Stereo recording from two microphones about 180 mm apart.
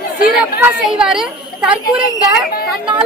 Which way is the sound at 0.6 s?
5° right (ahead or behind).